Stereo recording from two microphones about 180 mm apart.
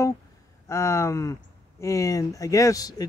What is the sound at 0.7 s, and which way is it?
Speech, 15° left (ahead or behind).